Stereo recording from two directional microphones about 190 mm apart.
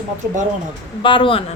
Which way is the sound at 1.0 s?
25° left (ahead or behind).